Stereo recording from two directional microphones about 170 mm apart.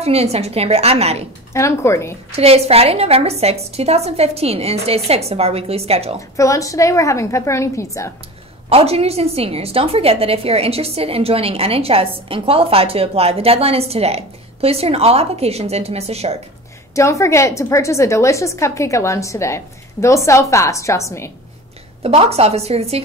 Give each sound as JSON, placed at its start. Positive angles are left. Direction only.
{"t": 0.0, "sound": "a woman's voice", "side_deg": -35}
{"t": 1.5, "sound": "a woman's voice", "side_deg": 15}
{"t": 2.3, "sound": "a woman's voice", "side_deg": -35}
{"t": 6.3, "sound": "a woman's voice", "side_deg": 20}
{"t": 8.6, "sound": "a woman's voice", "side_deg": -35}
{"t": 16.9, "sound": "a woman's voice", "side_deg": 15}
{"t": 22.0, "sound": "a woman's voice", "side_deg": -35}